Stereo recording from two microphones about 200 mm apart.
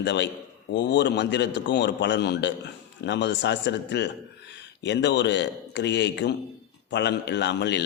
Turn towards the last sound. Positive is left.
turn(degrees=60)  # may be behind; listen again after turning